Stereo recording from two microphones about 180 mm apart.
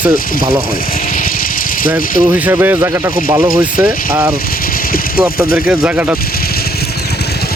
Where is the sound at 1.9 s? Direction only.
10° right (ahead or behind).